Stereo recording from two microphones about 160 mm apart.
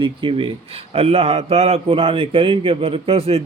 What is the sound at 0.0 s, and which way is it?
A man's voice, 30° right (ahead or behind).